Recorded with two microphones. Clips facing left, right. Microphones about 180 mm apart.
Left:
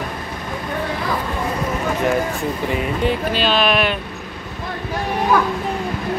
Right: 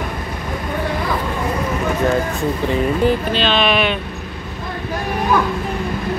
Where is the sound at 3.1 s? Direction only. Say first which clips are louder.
Right 2 dB; 5° left (ahead or behind).